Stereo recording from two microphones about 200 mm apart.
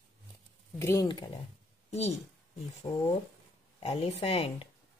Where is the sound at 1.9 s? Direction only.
30° left (ahead or behind).